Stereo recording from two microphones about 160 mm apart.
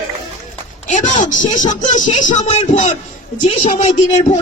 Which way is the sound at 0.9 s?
50° left (ahead or behind).